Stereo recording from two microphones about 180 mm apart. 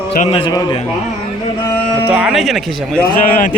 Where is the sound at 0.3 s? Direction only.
30° left (ahead or behind).